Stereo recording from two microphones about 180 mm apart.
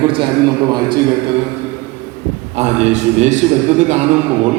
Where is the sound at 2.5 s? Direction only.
40° right (ahead or behind).